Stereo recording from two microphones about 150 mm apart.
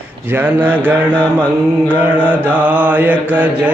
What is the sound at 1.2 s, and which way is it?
Mantra, 10° left (ahead or behind).